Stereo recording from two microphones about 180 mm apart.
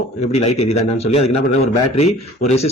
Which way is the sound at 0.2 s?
35° left (ahead or behind).